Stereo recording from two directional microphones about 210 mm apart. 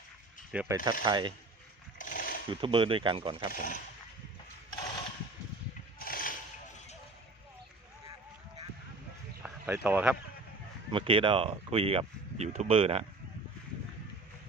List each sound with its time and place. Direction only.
0.5 s rub: 5° right (ahead or behind)
1.0 s speech: 20° right (ahead or behind)
2.0 s pulleys: 40° left (ahead or behind)
2.5 s speech: 25° right (ahead or behind)
3.5 s speech: 40° left (ahead or behind)
4.7 s mechanisms: 20° left (ahead or behind)
6.0 s a sound: 45° left (ahead or behind)
9.4 s a sound: 10° right (ahead or behind)
10.9 s speech: 25° right (ahead or behind)